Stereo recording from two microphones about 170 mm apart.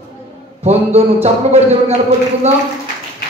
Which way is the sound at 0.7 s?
40° right (ahead or behind).